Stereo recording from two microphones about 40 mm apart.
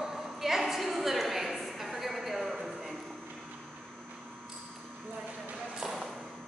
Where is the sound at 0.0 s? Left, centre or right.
Centre.